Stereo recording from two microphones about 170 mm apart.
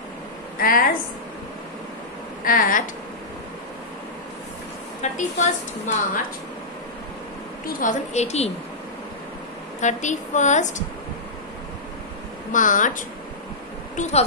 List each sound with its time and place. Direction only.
0.6 s a woman's voice: 55° left (ahead or behind)
2.4 s speech: 55° left (ahead or behind)
5.1 s a woman's voice: 45° left (ahead or behind)
7.6 s a woman's voice: 50° left (ahead or behind)
9.8 s a woman's voice: 45° left (ahead or behind)
12.5 s a woman's voice: 50° left (ahead or behind)